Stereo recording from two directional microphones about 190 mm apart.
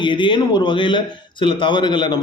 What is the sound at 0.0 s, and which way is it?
A man's voice, 25° left (ahead or behind).